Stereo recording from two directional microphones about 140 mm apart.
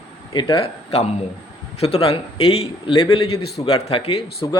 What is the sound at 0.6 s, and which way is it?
A man's voice, 50° left (ahead or behind).